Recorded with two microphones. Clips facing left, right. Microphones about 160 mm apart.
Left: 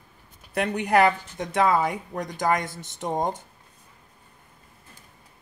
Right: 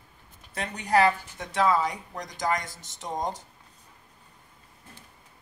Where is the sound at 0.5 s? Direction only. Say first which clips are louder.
Left 3 dB; 60° left (ahead or behind).